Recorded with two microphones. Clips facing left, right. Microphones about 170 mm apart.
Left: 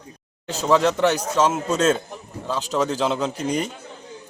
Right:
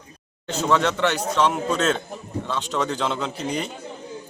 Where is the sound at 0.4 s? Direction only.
35° left (ahead or behind).